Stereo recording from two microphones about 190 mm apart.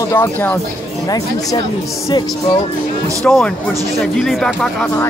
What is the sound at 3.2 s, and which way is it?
Speech, 5° left (ahead or behind).